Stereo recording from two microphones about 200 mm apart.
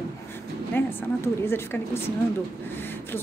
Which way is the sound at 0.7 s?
10° left (ahead or behind).